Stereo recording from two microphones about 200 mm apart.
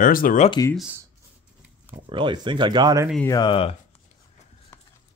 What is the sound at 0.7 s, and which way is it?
Speech, 5° right (ahead or behind).